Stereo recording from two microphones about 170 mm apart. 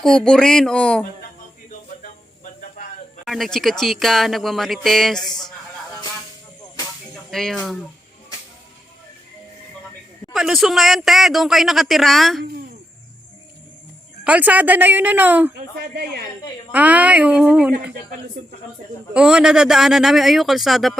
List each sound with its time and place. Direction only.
0.0 s speech: 5° left (ahead or behind)
2.0 s a sound: 50° left (ahead or behind)
3.2 s speech: centre (ahead or behind)
7.3 s speech: centre (ahead or behind)
10.3 s speech: centre (ahead or behind)
14.3 s speech: 10° right (ahead or behind)
16.7 s speech: 10° right (ahead or behind)
19.1 s speech: 5° right (ahead or behind)